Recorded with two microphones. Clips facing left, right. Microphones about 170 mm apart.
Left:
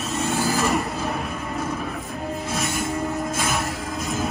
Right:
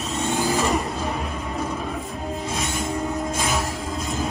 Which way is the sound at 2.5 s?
Centre (ahead or behind).